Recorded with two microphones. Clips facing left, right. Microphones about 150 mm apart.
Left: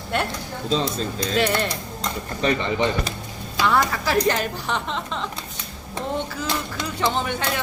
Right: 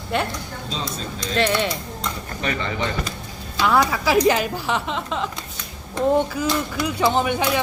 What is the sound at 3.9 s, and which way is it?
Speech, 10° right (ahead or behind).